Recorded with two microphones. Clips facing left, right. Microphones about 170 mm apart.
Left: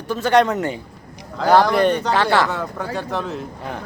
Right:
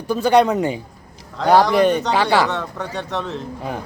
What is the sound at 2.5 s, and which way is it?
Speech, centre (ahead or behind).